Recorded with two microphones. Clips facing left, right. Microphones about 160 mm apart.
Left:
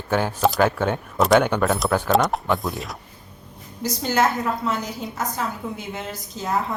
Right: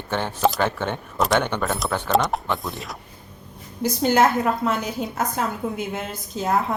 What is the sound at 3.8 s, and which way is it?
A woman's voice, 55° right (ahead or behind).